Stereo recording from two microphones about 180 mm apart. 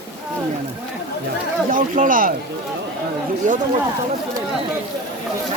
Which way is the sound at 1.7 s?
50° right (ahead or behind).